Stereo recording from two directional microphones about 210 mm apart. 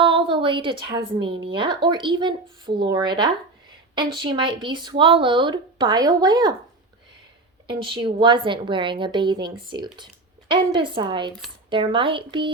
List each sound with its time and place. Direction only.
0.0 s a woman's voice: 25° right (ahead or behind)
7.7 s speech: 25° right (ahead or behind)